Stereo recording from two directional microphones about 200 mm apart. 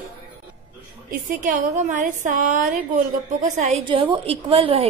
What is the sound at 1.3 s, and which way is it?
A woman's voice, 40° right (ahead or behind).